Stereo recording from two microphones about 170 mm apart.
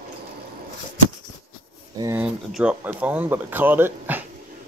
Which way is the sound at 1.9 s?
20° right (ahead or behind).